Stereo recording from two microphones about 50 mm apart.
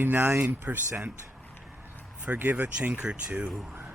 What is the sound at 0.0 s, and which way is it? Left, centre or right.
Speech, right.